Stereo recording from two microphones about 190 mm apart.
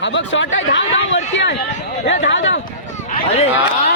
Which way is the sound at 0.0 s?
70° left (ahead or behind).